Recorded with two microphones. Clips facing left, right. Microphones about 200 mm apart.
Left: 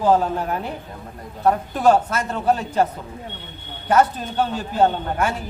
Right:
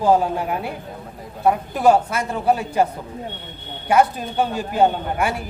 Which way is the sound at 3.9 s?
10° right (ahead or behind).